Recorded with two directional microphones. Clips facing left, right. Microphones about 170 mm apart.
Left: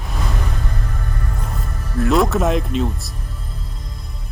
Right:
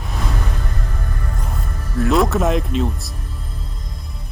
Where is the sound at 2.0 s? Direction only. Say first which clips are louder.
Even; centre (ahead or behind).